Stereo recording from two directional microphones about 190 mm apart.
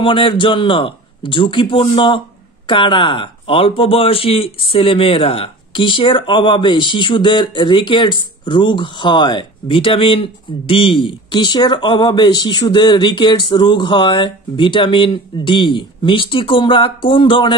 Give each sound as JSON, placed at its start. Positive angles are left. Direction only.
{"t": 0.0, "sound": "a man's voice", "side_deg": 25}